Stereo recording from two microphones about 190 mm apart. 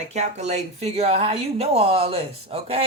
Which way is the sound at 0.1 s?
35° right (ahead or behind).